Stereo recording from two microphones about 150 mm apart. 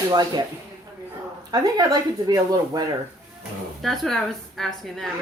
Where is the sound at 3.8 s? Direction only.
Centre (ahead or behind).